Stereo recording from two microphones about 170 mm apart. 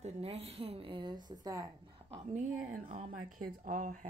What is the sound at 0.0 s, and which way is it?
A woman's voice, 35° right (ahead or behind).